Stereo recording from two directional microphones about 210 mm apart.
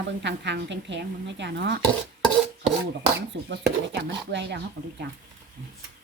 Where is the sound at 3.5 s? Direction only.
55° right (ahead or behind).